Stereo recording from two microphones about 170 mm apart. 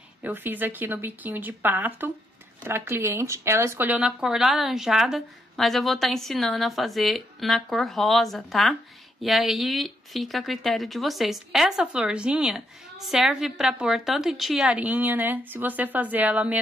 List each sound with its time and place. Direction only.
0.2 s a woman's voice: 10° right (ahead or behind)